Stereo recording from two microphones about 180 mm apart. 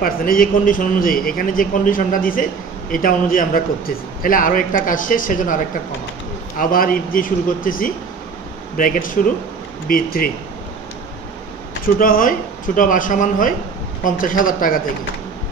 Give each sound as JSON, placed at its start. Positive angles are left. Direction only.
{"t": 0.0, "sound": "a man's voice", "side_deg": 50}
{"t": 6.6, "sound": "a man's voice", "side_deg": 50}
{"t": 11.8, "sound": "a man's voice", "side_deg": 50}